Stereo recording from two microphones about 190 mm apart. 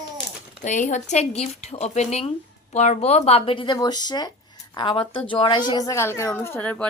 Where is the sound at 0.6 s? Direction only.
40° left (ahead or behind).